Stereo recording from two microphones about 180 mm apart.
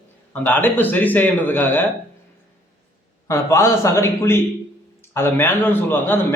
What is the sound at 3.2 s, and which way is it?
Speech, 15° left (ahead or behind).